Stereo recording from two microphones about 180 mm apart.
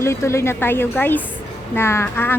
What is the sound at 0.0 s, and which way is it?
A woman's voice, 15° left (ahead or behind).